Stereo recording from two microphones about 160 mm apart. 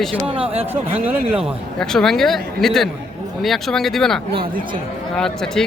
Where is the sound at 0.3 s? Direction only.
35° right (ahead or behind).